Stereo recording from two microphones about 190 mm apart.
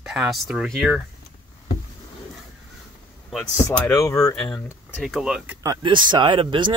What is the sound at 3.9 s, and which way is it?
Speech, 15° left (ahead or behind).